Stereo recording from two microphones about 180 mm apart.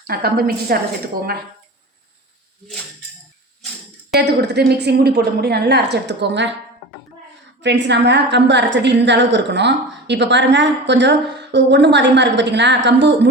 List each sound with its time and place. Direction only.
0.1 s a woman's voice: 60° right (ahead or behind)
4.1 s a woman's voice: 65° right (ahead or behind)
7.6 s a woman's voice: 75° right (ahead or behind)